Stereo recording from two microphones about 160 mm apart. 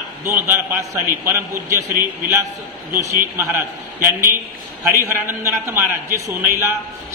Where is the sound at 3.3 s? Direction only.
15° right (ahead or behind).